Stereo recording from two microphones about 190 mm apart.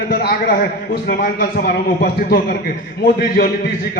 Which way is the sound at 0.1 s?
55° left (ahead or behind).